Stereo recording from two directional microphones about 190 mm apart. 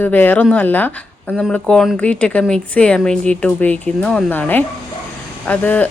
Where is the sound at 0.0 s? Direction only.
10° left (ahead or behind).